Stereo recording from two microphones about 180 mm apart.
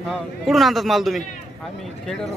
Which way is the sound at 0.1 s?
Centre (ahead or behind).